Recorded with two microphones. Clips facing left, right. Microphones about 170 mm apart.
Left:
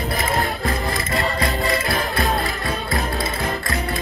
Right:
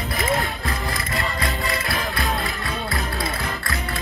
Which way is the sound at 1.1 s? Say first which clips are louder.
Left 5 dB; 40° left (ahead or behind).